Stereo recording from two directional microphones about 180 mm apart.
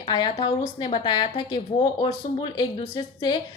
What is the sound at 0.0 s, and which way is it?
A woman's voice, 25° left (ahead or behind).